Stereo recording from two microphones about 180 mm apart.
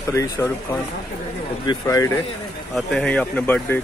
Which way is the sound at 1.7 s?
20° left (ahead or behind).